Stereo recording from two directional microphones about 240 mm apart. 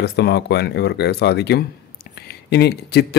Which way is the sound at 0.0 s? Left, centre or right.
Left.